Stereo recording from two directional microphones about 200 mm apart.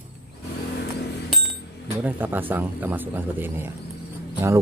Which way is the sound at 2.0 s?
10° right (ahead or behind).